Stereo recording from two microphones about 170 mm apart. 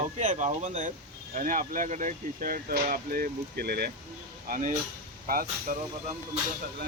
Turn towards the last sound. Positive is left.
turn(degrees=-40)  # may be behind; listen again after turning